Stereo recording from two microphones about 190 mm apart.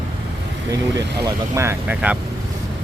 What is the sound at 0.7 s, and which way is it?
Speech, 20° right (ahead or behind).